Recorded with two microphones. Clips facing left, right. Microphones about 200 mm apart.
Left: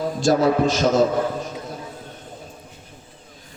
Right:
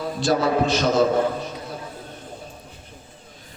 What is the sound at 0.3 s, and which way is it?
Speech, 45° left (ahead or behind).